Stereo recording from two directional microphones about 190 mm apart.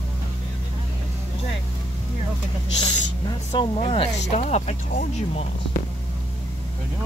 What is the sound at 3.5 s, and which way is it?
Speech, 25° left (ahead or behind).